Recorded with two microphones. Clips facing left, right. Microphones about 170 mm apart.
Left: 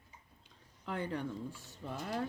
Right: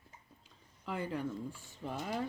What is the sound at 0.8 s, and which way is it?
Cutlery, 5° right (ahead or behind).